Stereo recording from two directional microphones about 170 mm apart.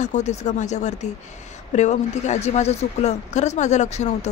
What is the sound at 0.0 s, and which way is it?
Speech, 45° left (ahead or behind).